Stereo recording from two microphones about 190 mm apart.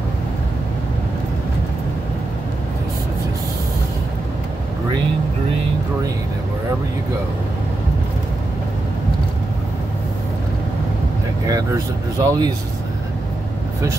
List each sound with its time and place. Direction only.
11.4 s speech: 20° right (ahead or behind)